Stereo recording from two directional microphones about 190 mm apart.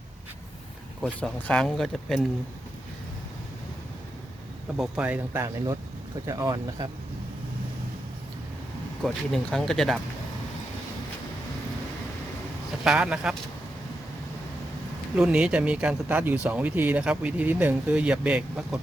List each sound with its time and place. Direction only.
1.0 s speech: 5° left (ahead or behind)
4.8 s speech: 5° right (ahead or behind)
9.0 s speech: centre (ahead or behind)
12.8 s speech: 5° right (ahead or behind)
15.1 s speech: 5° right (ahead or behind)